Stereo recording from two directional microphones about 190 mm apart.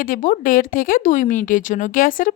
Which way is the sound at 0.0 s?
45° left (ahead or behind).